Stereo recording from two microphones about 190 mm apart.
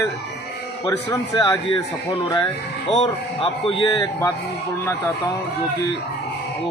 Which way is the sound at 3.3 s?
30° left (ahead or behind).